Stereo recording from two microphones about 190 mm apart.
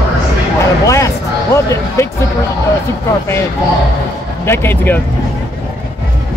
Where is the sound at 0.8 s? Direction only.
15° left (ahead or behind).